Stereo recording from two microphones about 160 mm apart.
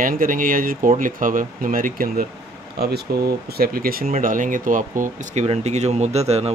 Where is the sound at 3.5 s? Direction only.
65° right (ahead or behind).